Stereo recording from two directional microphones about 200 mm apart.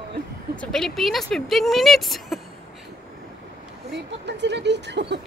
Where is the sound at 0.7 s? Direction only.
Centre (ahead or behind).